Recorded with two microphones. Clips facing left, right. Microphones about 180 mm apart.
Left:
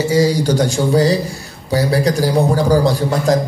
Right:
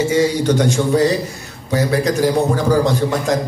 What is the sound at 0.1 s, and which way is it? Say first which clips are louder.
A man's voice: left 1 dB; 35° left (ahead or behind).